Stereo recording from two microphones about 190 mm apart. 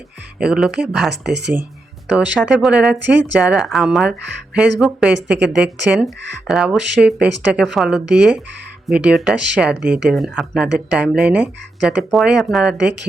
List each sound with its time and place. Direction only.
0.3 s speech: 5° right (ahead or behind)
5.1 s a woman's voice: 65° right (ahead or behind)
5.5 s speech: 5° right (ahead or behind)